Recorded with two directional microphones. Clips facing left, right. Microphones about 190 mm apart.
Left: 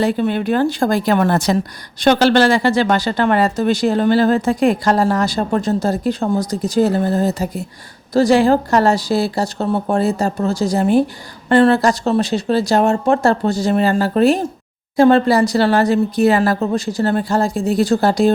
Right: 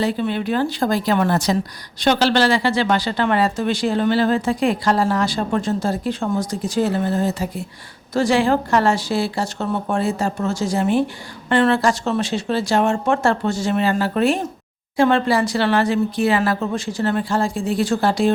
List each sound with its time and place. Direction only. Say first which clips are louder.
0.0 s speech: left 4 dB; 50° left (ahead or behind)